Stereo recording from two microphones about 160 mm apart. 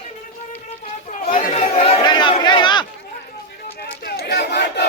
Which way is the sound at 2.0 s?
25° left (ahead or behind).